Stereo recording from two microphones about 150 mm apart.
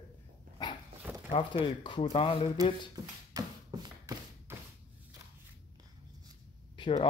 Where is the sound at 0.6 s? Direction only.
25° left (ahead or behind).